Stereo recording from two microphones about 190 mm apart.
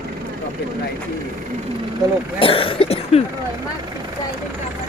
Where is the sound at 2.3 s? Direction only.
30° left (ahead or behind).